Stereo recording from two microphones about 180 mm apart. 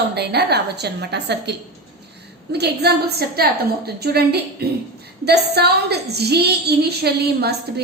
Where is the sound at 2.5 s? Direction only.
65° right (ahead or behind).